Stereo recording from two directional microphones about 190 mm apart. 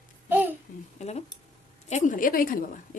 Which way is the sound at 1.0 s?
35° left (ahead or behind).